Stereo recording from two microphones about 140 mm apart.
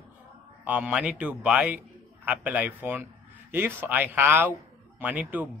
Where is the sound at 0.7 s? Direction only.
10° right (ahead or behind).